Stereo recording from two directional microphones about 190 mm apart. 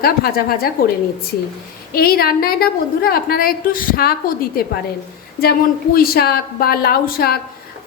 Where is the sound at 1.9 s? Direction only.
55° left (ahead or behind).